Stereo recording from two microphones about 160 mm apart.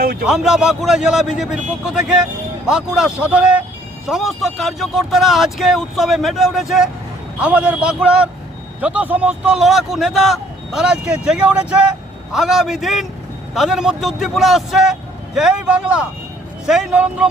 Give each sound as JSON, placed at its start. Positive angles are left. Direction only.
{"t": 0.0, "sound": "speech", "side_deg": -70}
{"t": 0.3, "sound": "a man's voice", "side_deg": -5}